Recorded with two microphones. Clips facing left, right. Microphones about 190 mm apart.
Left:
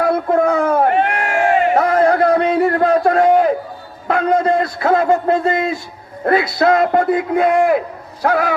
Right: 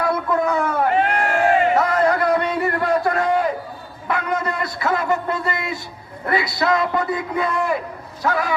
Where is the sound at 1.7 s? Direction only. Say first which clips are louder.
Left 4 dB; 50° left (ahead or behind).